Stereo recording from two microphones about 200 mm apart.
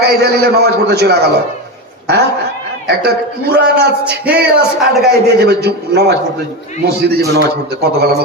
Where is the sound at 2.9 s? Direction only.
55° right (ahead or behind).